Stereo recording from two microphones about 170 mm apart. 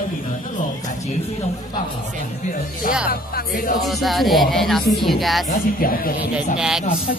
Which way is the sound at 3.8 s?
Centre (ahead or behind).